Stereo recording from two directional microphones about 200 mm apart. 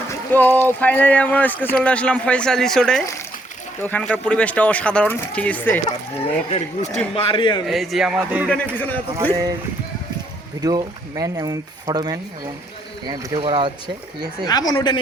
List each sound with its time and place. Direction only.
0.1 s speech: 10° left (ahead or behind)
6.2 s speech: 30° left (ahead or behind)
7.7 s speech: centre (ahead or behind)
8.4 s speech: 5° left (ahead or behind)
10.6 s speech: 20° right (ahead or behind)
14.7 s speech: 20° left (ahead or behind)